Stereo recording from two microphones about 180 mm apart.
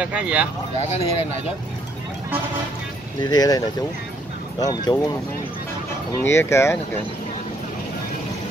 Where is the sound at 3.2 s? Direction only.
20° left (ahead or behind).